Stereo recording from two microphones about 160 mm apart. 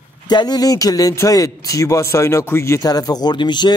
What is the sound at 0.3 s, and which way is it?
A man's voice, 25° left (ahead or behind).